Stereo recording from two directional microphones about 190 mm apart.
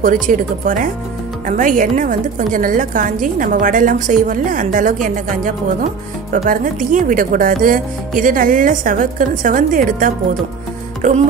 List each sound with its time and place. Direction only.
0.0 s speech: 45° right (ahead or behind)
11.0 s music: 40° right (ahead or behind)